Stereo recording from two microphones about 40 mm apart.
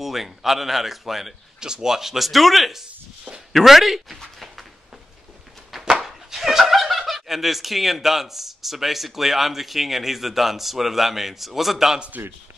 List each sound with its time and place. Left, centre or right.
0.0 s speech: centre
1.6 s speech: centre
4.2 s a sound: centre
6.0 s speech: centre